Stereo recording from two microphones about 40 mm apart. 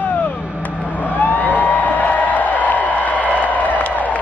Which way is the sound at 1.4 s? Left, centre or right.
Left.